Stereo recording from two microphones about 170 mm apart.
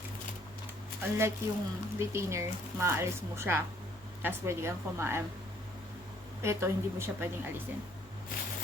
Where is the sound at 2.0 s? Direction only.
15° right (ahead or behind).